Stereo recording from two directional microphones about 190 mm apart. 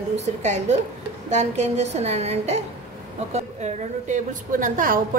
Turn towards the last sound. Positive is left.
turn(degrees=-45)  # may be behind; listen again after turning